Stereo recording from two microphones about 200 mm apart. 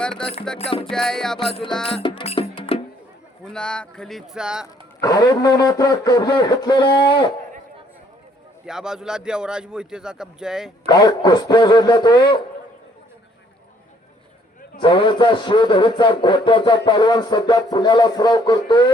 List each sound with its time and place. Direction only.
0.0 s a man's voice: 5° left (ahead or behind)
0.6 s speech: 25° left (ahead or behind)
0.9 s a man's voice: 5° left (ahead or behind)
2.0 s music: 25° left (ahead or behind)
3.4 s a man's voice: 5° left (ahead or behind)
4.6 s speech: 15° left (ahead or behind)
8.6 s a man's voice: 5° right (ahead or behind)
10.8 s speech: 20° left (ahead or behind)
14.8 s speech: 25° left (ahead or behind)